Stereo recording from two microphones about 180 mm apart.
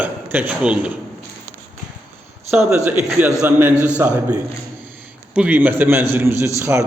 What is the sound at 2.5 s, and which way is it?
A man's voice, 5° right (ahead or behind).